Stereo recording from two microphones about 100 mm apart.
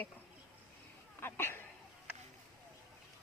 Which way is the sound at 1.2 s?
25° left (ahead or behind).